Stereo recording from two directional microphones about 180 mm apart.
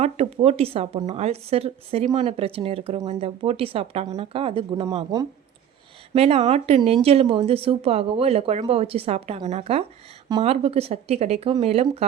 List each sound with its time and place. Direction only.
0.0 s a woman's voice: 35° right (ahead or behind)